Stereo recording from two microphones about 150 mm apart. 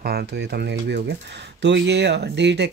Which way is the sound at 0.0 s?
90° right.